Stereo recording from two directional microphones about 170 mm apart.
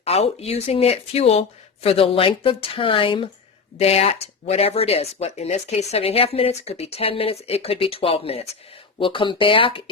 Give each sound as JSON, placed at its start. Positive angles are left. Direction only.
{"t": 0.0, "sound": "speech", "side_deg": 35}